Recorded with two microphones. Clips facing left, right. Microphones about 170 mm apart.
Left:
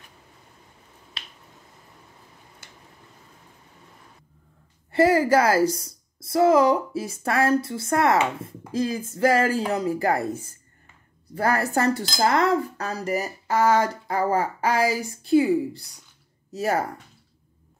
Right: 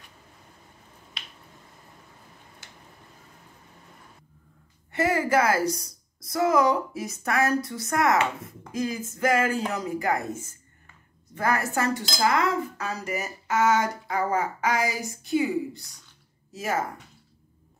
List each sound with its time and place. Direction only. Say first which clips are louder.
4.9 s speech: left 5 dB; 30° left (ahead or behind)